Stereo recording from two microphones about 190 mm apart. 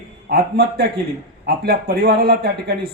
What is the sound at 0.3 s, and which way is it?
A man's voice, 55° right (ahead or behind).